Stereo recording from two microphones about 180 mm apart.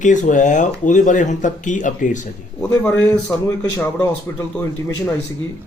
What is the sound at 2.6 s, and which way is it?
Speech, 10° left (ahead or behind).